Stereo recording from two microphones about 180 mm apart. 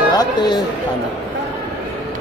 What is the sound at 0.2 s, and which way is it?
Speech, 25° left (ahead or behind).